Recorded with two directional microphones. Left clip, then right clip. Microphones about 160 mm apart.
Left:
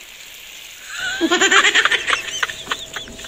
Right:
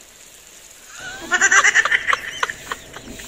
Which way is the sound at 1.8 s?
10° right (ahead or behind).